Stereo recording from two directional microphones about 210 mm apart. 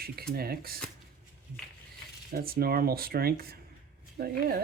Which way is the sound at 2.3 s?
45° right (ahead or behind).